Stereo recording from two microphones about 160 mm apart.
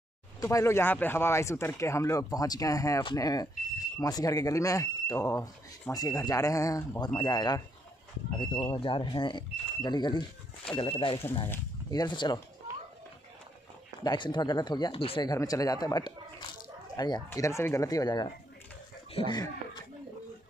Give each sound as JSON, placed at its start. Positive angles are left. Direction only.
{"t": 0.4, "sound": "speech", "side_deg": 20}
{"t": 14.0, "sound": "speech", "side_deg": 30}
{"t": 15.3, "sound": "speech", "side_deg": 20}